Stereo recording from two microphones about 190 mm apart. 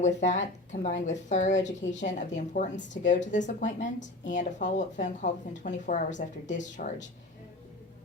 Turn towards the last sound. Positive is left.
turn(degrees=40)  # may be behind; listen again after turning